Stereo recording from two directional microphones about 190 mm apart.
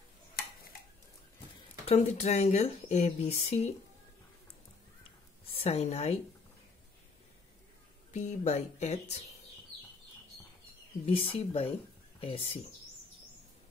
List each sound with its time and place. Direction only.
1.9 s speech: 35° left (ahead or behind)
5.5 s a woman's voice: 30° left (ahead or behind)
8.1 s speech: 35° left (ahead or behind)
11.1 s speech: 30° left (ahead or behind)